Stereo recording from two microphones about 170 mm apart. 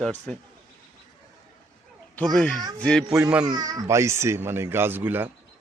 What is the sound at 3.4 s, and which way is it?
Speech, 25° right (ahead or behind).